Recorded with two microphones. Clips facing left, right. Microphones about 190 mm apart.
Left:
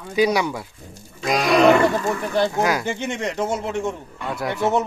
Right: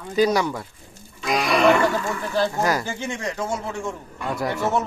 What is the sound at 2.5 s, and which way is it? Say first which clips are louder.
Speech: left 2 dB; centre (ahead or behind).